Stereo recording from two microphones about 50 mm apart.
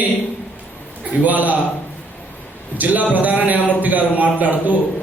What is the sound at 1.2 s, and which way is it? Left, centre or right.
Speech, right.